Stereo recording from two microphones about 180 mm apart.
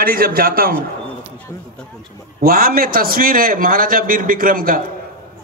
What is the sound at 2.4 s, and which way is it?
A man's voice, 55° right (ahead or behind).